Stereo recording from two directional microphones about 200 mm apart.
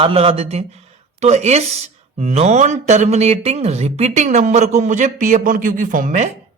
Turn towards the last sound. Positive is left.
turn(degrees=-40)  # may be behind; listen again after turning